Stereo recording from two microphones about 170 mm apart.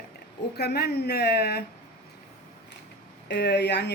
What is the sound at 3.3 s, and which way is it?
Speech, 75° left (ahead or behind).